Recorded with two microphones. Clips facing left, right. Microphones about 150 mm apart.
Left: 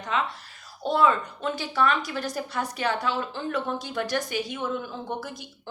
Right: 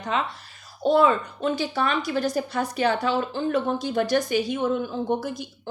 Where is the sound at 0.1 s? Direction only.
25° right (ahead or behind).